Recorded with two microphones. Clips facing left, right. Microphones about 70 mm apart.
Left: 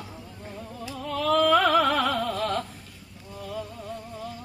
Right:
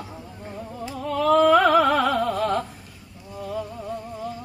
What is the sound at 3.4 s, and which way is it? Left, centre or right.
Music, centre.